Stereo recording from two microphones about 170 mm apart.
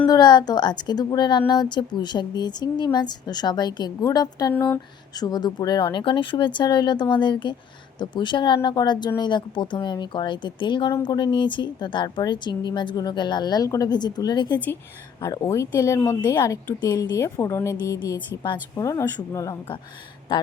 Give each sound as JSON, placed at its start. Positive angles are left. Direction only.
{"t": 0.1, "sound": "a woman's voice", "side_deg": 25}
{"t": 4.5, "sound": "speech", "side_deg": 10}
{"t": 5.2, "sound": "a woman's voice", "side_deg": 25}